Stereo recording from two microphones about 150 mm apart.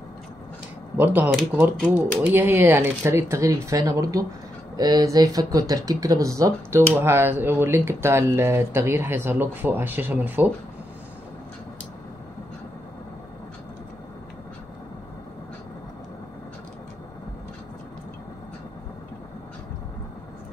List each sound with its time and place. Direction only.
0.9 s speech: 10° right (ahead or behind)